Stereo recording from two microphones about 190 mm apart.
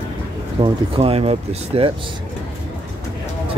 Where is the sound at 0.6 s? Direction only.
30° right (ahead or behind).